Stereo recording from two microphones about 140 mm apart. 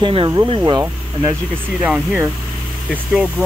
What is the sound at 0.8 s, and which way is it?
Speech, 20° right (ahead or behind).